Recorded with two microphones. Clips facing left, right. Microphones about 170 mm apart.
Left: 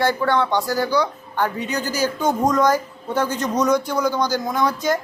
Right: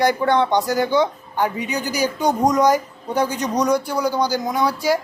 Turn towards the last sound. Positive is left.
turn(degrees=-10)  # may be behind; listen again after turning